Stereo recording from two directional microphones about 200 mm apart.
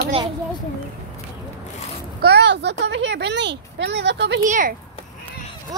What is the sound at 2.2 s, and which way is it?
Speech, 55° right (ahead or behind).